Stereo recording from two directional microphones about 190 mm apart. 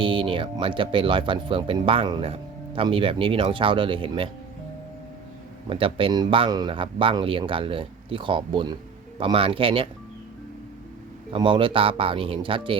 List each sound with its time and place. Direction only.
0.0 s speech: 25° right (ahead or behind)
5.6 s speech: 25° right (ahead or behind)
11.3 s speech: 25° right (ahead or behind)